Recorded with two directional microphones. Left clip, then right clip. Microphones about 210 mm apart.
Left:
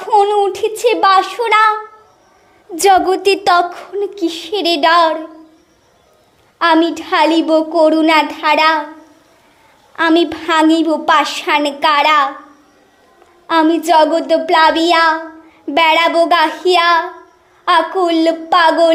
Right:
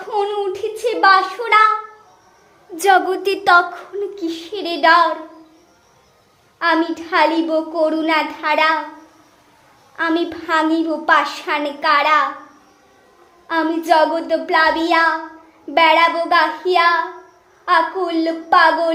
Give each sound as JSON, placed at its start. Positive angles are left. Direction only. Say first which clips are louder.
{"t": 0.0, "sound": "a sound", "louder": "left 9 dB", "side_deg": 30}
{"t": 2.7, "sound": "a woman's voice", "louder": "left 4 dB", "side_deg": 25}
{"t": 6.6, "sound": "a woman's voice", "louder": "left 5 dB", "side_deg": 35}
{"t": 9.9, "sound": "a woman's voice", "louder": "left 7 dB", "side_deg": 35}
{"t": 13.5, "sound": "a woman's voice", "louder": "left 5 dB", "side_deg": 35}